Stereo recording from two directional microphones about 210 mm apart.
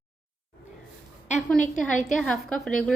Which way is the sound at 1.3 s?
5° left (ahead or behind).